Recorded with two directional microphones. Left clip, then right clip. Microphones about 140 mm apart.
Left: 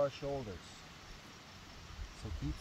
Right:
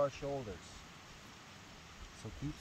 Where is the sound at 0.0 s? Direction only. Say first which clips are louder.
Even; 15° right (ahead or behind).